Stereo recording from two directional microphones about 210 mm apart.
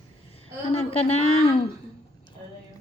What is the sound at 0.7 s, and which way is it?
Speech, 30° left (ahead or behind).